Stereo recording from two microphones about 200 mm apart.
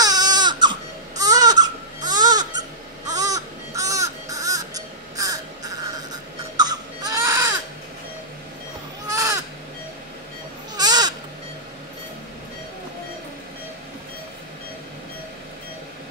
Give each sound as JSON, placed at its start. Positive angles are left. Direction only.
{"t": 0.0, "sound": "baby cry", "side_deg": -20}
{"t": 2.0, "sound": "a sound", "side_deg": -20}
{"t": 3.1, "sound": "crow", "side_deg": -15}
{"t": 6.5, "sound": "baby cry", "side_deg": -20}
{"t": 9.1, "sound": "a sound", "side_deg": -15}
{"t": 10.8, "sound": "owl", "side_deg": -20}